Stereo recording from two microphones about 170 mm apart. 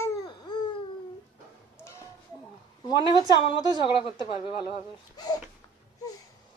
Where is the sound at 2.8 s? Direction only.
25° left (ahead or behind).